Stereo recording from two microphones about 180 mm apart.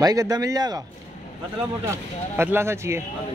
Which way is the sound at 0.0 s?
20° right (ahead or behind).